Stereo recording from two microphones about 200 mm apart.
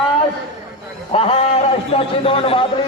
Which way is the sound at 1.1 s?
30° left (ahead or behind).